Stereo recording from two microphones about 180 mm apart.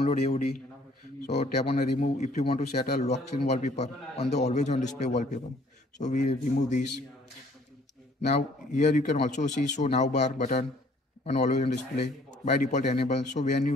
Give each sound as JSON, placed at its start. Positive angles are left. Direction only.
{"t": 0.1, "sound": "a man's voice", "side_deg": 35}
{"t": 8.3, "sound": "a man's voice", "side_deg": 40}